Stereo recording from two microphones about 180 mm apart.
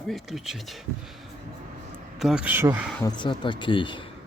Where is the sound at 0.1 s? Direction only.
Centre (ahead or behind).